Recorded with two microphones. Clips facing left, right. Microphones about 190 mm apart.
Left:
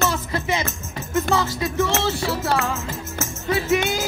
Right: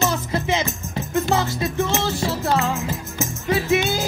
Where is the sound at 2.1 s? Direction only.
30° right (ahead or behind).